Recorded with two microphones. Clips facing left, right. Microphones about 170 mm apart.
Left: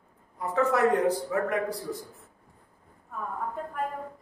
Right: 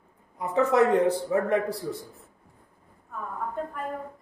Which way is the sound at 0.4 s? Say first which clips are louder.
Right 3 dB; 20° right (ahead or behind).